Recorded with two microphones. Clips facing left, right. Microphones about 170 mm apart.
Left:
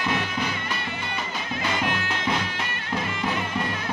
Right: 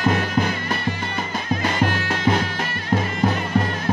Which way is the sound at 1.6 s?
40° right (ahead or behind).